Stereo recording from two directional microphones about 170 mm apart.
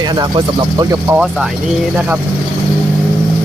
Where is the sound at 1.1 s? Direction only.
5° right (ahead or behind).